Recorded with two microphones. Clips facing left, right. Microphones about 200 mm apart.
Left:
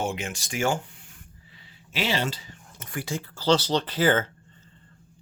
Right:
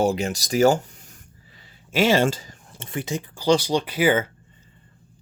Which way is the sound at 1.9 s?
50° right (ahead or behind).